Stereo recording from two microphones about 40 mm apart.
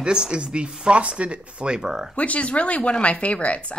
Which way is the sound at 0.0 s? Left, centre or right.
Right.